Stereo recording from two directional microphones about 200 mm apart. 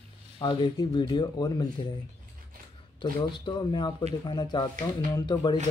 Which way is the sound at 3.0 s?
20° left (ahead or behind).